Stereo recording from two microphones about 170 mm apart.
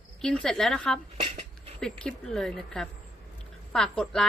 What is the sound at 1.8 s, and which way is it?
Speech, 5° left (ahead or behind).